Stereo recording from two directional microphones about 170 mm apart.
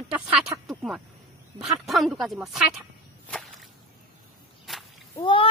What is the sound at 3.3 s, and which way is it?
Whip, centre (ahead or behind).